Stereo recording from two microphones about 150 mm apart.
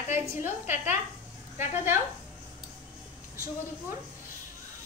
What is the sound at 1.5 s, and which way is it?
Speech, 15° right (ahead or behind).